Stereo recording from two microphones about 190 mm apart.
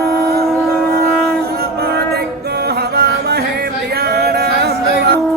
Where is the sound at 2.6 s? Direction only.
60° right (ahead or behind).